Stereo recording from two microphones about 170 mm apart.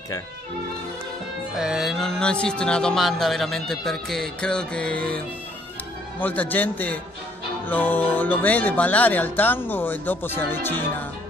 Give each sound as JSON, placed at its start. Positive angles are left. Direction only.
{"t": 1.6, "sound": "speech", "side_deg": -5}
{"t": 6.2, "sound": "speech", "side_deg": 10}